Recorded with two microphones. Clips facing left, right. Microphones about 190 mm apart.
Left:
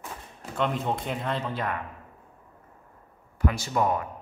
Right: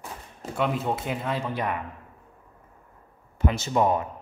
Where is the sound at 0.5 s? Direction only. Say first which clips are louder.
Right 1 dB; 5° right (ahead or behind).